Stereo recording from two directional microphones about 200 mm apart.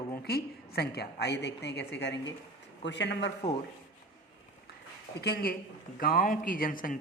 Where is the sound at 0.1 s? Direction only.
50° left (ahead or behind).